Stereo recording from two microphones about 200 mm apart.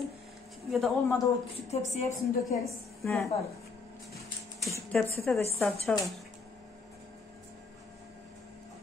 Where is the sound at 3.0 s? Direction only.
Centre (ahead or behind).